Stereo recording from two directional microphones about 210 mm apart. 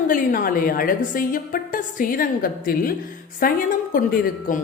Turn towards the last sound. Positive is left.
turn(degrees=40)  # may be behind; listen again after turning